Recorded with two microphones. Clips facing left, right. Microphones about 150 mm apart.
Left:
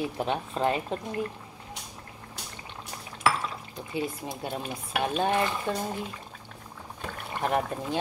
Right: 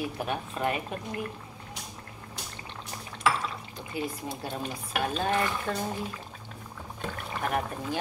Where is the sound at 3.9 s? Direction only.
25° left (ahead or behind).